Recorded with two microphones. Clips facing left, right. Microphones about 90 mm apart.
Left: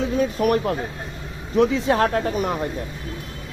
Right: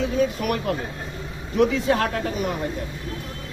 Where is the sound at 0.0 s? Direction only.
35° left (ahead or behind).